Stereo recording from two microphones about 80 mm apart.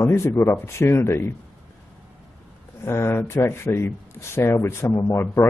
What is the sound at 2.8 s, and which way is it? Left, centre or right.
Speech, left.